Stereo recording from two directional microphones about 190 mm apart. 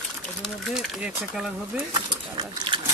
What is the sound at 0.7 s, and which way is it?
Speech, 5° right (ahead or behind).